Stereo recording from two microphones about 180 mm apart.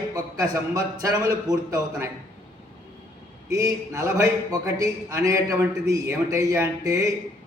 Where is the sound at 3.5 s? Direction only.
15° right (ahead or behind).